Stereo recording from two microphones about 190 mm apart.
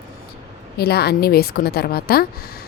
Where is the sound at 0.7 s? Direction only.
55° left (ahead or behind).